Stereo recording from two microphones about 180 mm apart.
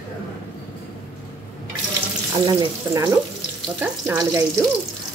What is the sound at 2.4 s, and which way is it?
Speech, 20° right (ahead or behind).